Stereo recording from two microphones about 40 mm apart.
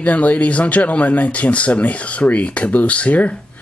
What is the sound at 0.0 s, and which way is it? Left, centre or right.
Speech, left.